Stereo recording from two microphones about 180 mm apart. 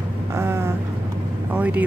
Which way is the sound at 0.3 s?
15° right (ahead or behind).